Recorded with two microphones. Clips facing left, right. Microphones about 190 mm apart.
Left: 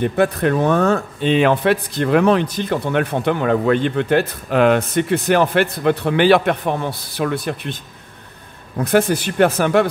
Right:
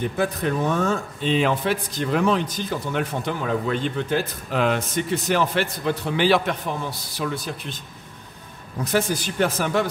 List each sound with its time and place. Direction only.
0.0 s a man's voice: 65° left (ahead or behind)